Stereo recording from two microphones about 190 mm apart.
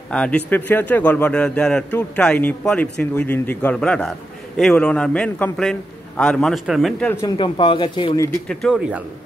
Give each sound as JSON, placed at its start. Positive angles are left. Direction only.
{"t": 0.1, "sound": "a man's voice", "side_deg": 5}
{"t": 7.2, "sound": "speech", "side_deg": 25}
{"t": 8.5, "sound": "a man's voice", "side_deg": 5}